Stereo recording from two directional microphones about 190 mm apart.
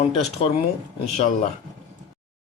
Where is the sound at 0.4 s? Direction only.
30° left (ahead or behind).